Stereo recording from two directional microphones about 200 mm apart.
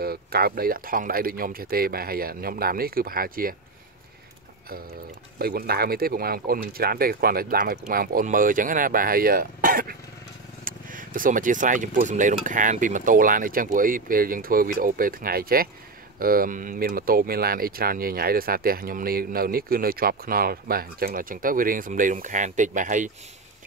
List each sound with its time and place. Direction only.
0.0 s speech: 50° right (ahead or behind)
5.4 s speech: 50° right (ahead or behind)